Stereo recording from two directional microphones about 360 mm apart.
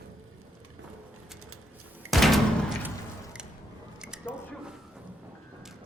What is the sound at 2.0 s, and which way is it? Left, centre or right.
Music, centre.